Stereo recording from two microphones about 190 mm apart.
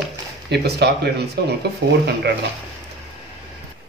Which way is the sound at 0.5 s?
60° right (ahead or behind).